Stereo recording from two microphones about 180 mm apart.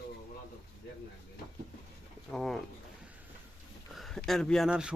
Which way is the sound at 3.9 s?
Centre (ahead or behind).